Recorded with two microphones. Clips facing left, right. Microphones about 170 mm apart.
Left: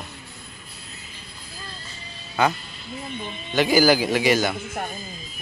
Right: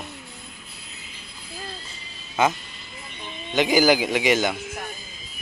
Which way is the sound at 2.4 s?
20° right (ahead or behind).